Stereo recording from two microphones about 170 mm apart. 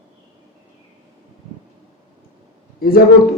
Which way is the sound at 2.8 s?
60° left (ahead or behind).